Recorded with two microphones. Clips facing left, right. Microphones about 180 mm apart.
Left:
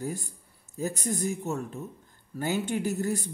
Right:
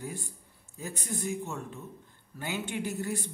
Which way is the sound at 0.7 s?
40° left (ahead or behind).